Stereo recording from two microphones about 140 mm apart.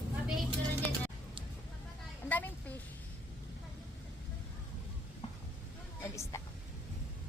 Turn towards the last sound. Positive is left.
turn(degrees=20)  # may be behind; listen again after turning